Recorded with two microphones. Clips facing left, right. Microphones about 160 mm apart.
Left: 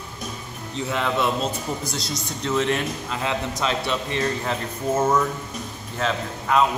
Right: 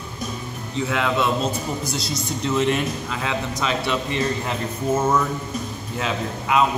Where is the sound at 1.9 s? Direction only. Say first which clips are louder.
Right 3 dB; 5° right (ahead or behind).